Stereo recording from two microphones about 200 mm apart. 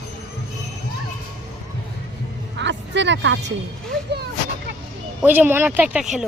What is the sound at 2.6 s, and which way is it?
Music, 65° right (ahead or behind).